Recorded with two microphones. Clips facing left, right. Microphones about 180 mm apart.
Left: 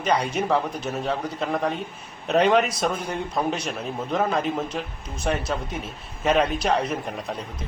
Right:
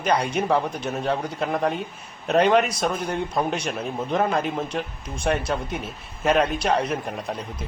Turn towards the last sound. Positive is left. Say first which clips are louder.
# right 1 dB
turn(degrees=0)  # may be behind; listen again after turning